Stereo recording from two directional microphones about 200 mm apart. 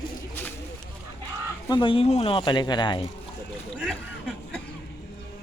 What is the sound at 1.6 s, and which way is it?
Speech, 25° left (ahead or behind).